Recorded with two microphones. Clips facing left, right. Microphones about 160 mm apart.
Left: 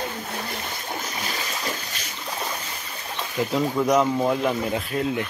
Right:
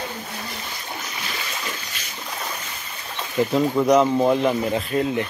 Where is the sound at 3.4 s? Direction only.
5° right (ahead or behind).